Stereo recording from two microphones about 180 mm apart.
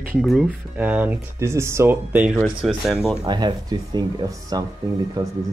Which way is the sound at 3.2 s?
25° right (ahead or behind).